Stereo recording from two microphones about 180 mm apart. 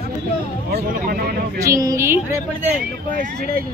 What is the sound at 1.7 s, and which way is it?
Speech, 20° right (ahead or behind).